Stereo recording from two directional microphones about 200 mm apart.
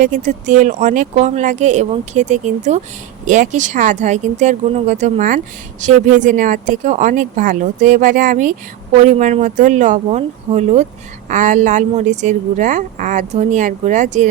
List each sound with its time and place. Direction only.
0.0 s speech: 40° right (ahead or behind)